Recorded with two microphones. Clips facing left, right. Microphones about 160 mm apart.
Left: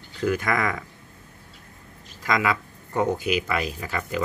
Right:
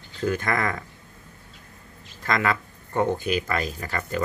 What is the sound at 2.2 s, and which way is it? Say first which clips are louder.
Speech: even; 10° left (ahead or behind).